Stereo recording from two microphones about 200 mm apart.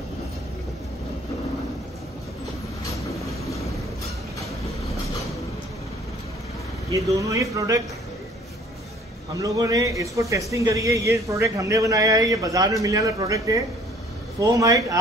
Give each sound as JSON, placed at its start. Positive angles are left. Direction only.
{"t": 7.2, "sound": "speech", "side_deg": -15}
{"t": 9.4, "sound": "speech", "side_deg": -15}